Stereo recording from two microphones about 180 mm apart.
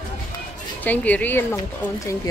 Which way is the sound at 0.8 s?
10° left (ahead or behind).